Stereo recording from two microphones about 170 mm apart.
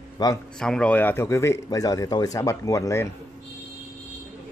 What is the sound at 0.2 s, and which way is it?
Speech, 20° left (ahead or behind).